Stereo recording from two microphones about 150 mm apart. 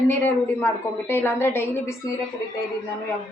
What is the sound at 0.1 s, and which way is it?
A woman's voice, 10° left (ahead or behind).